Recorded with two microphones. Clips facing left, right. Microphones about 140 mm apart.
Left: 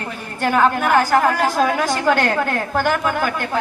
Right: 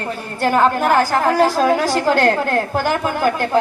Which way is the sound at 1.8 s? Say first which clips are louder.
Right 2 dB; 40° right (ahead or behind).